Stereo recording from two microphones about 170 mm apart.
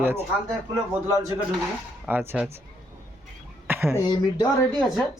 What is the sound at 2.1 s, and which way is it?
Speech, 10° right (ahead or behind).